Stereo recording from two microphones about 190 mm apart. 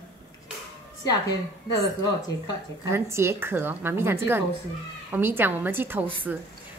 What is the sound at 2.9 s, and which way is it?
A woman's voice, 15° right (ahead or behind).